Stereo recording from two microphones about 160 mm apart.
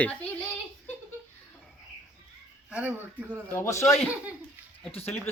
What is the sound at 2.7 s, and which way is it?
Speech, 10° right (ahead or behind).